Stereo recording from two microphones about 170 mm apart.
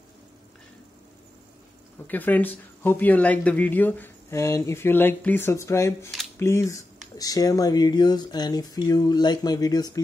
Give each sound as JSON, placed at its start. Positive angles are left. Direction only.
{"t": 2.0, "sound": "speech", "side_deg": 10}